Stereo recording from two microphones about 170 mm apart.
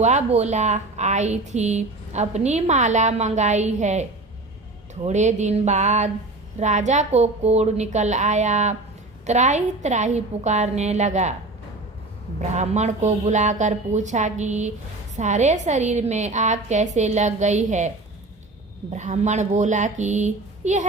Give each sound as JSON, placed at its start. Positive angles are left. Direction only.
{"t": 0.0, "sound": "a woman's voice", "side_deg": -40}
{"t": 5.0, "sound": "a woman's voice", "side_deg": -45}
{"t": 12.4, "sound": "a woman's voice", "side_deg": -40}
{"t": 18.9, "sound": "a woman's voice", "side_deg": -45}